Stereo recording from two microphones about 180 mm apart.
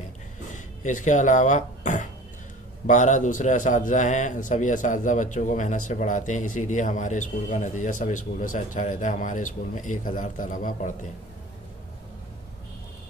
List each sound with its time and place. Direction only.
0.8 s a man's voice: 45° left (ahead or behind)